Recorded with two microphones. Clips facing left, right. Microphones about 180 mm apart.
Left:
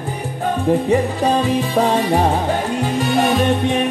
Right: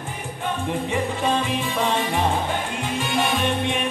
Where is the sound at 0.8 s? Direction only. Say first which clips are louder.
Left 7 dB; 40° left (ahead or behind).